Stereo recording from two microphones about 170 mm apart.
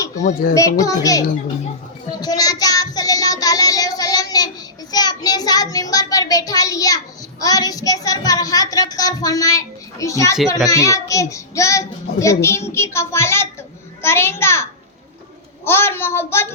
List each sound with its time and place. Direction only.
0.5 s a child's voice: 20° left (ahead or behind)
2.0 s child singing: 20° left (ahead or behind)
10.7 s a child's voice: 20° left (ahead or behind)